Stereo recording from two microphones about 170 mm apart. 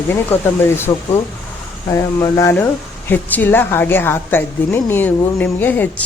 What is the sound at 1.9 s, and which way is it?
A woman's voice, 15° left (ahead or behind).